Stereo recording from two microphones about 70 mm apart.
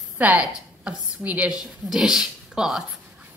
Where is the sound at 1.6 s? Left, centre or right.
Centre.